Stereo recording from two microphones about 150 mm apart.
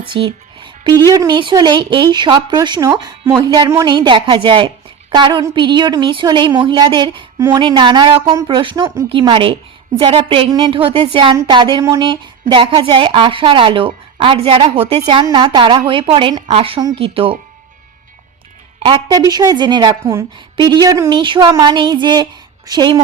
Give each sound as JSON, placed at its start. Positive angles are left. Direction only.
{"t": 0.1, "sound": "speech", "side_deg": -35}
{"t": 18.9, "sound": "speech", "side_deg": -25}